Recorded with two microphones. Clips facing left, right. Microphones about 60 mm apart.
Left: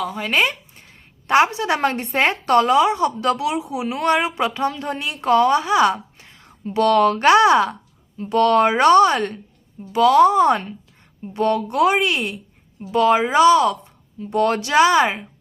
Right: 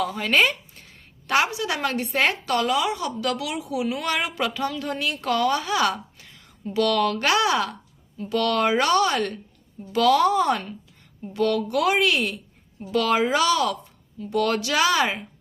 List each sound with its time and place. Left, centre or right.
0.2 s speech: centre
1.3 s a woman's voice: left